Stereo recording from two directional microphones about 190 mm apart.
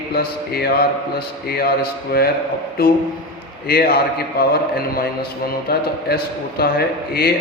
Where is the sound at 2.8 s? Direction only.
55° left (ahead or behind).